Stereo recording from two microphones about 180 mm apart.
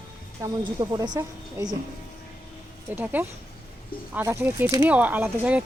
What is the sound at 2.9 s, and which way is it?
Speech, 10° right (ahead or behind).